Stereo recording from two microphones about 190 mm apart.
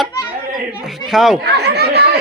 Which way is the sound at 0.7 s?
5° right (ahead or behind).